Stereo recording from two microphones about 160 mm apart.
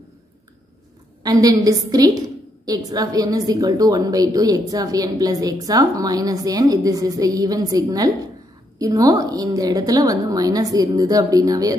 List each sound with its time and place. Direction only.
1.2 s a woman's voice: 25° right (ahead or behind)